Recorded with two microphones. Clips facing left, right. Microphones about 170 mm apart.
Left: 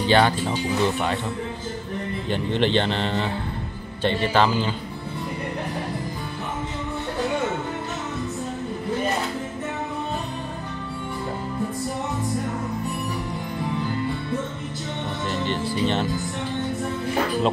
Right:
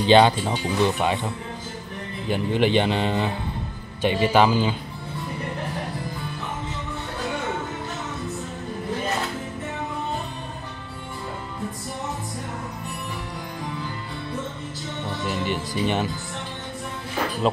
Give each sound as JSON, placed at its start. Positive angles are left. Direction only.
{"t": 0.0, "sound": "speech", "side_deg": -20}
{"t": 2.2, "sound": "a man's voice", "side_deg": -10}
{"t": 15.2, "sound": "music", "side_deg": -10}
{"t": 15.7, "sound": "speech", "side_deg": -10}